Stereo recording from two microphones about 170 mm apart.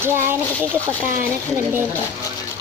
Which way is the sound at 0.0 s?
15° right (ahead or behind).